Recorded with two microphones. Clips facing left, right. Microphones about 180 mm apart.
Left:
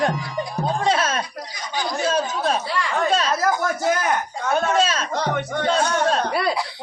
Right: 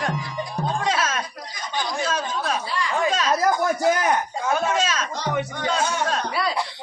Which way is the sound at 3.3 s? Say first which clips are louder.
Right 1 dB; 15° right (ahead or behind).